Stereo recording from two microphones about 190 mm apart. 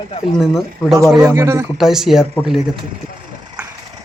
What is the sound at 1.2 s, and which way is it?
Speech, 15° right (ahead or behind).